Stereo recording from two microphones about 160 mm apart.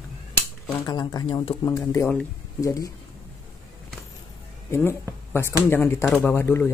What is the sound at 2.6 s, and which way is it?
Speech, 20° left (ahead or behind).